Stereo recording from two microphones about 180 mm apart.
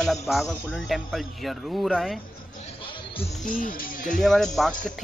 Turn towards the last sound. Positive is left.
turn(degrees=0)  # may be behind; listen again after turning